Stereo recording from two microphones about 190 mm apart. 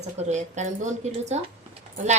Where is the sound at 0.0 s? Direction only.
35° right (ahead or behind).